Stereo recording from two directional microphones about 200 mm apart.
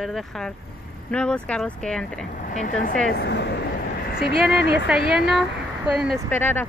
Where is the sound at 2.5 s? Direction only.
40° left (ahead or behind).